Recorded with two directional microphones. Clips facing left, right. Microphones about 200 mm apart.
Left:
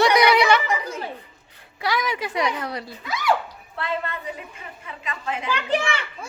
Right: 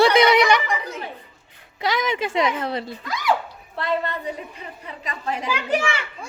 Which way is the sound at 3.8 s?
35° right (ahead or behind).